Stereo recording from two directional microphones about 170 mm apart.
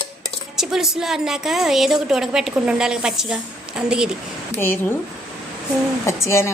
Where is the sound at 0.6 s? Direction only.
5° right (ahead or behind).